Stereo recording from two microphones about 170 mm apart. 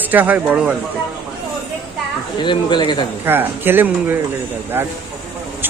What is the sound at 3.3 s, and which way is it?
Speech, 10° right (ahead or behind).